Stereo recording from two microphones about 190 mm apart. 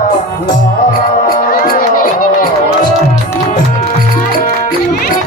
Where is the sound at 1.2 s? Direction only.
50° left (ahead or behind).